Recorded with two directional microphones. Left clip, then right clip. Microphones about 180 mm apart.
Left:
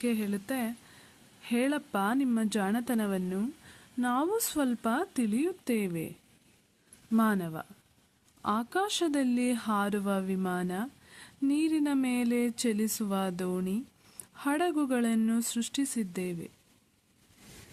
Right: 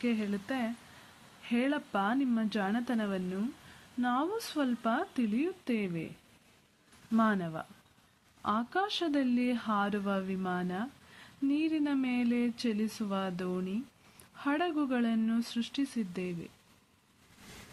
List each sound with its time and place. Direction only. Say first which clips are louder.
0.0 s speech: left 2 dB; 35° left (ahead or behind)
7.2 s speech: left 1 dB; 35° left (ahead or behind)